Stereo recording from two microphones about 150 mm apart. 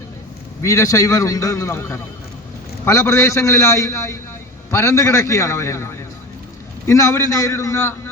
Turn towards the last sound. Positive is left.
turn(degrees=20)  # may be behind; listen again after turning